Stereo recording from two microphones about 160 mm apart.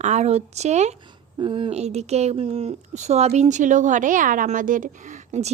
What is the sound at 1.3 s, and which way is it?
Speech, 30° right (ahead or behind).